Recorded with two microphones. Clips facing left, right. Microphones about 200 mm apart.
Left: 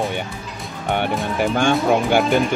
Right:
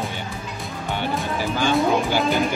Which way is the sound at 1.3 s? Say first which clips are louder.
Left 3 dB; 60° left (ahead or behind).